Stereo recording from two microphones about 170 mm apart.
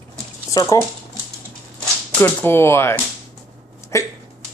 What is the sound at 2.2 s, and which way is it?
Speech, 15° left (ahead or behind).